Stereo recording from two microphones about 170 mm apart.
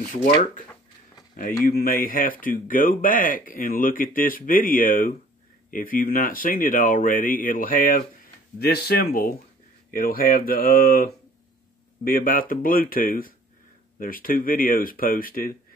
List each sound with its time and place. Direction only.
0.2 s speech: 50° left (ahead or behind)
8.5 s speech: 70° left (ahead or behind)